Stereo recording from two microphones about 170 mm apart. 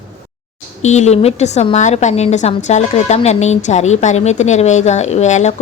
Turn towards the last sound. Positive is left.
turn(degrees=40)  # may be behind; listen again after turning